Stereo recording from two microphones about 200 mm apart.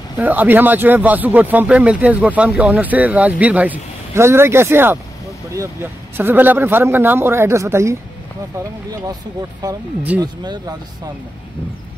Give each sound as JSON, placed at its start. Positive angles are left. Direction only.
{"t": 0.2, "sound": "speech", "side_deg": -10}
{"t": 10.2, "sound": "speech", "side_deg": -20}